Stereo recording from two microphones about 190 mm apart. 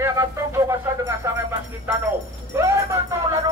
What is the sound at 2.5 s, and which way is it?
Music, 15° right (ahead or behind).